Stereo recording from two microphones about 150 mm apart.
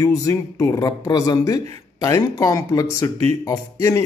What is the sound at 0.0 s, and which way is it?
Speech, 20° left (ahead or behind).